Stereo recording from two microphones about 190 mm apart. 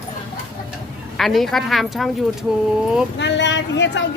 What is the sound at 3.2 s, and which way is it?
Speech, 70° left (ahead or behind).